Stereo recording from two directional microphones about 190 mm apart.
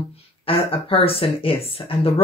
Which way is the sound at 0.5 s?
30° left (ahead or behind).